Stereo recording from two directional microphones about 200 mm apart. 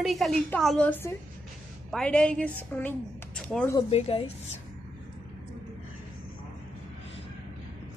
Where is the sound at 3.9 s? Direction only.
30° left (ahead or behind).